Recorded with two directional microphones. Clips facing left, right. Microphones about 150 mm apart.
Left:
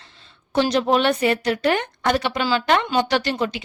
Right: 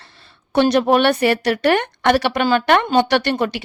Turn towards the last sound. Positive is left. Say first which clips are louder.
# right 4 dB
turn(degrees=-60)  # may be behind; listen again after turning